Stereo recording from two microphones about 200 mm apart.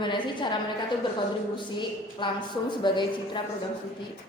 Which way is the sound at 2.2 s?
25° left (ahead or behind).